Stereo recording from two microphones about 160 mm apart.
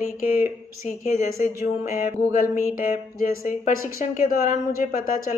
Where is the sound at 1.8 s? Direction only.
50° left (ahead or behind).